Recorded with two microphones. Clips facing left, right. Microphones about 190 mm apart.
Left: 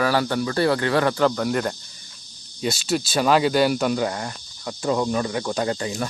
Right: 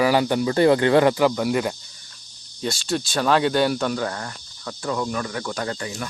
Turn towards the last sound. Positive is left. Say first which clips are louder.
# left 4 dB
turn(degrees=25)  # may be behind; listen again after turning